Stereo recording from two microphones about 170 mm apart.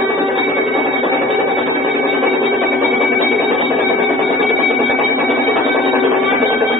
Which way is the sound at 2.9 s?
Centre (ahead or behind).